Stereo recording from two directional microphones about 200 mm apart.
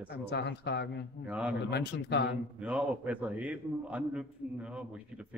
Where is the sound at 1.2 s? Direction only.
5° right (ahead or behind).